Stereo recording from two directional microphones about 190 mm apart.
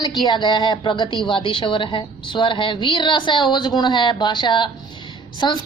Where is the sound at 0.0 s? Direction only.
25° left (ahead or behind).